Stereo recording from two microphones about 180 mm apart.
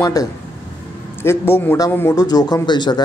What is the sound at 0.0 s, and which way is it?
Speech, 20° left (ahead or behind).